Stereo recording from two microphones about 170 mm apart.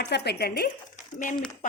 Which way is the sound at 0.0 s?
75° left (ahead or behind).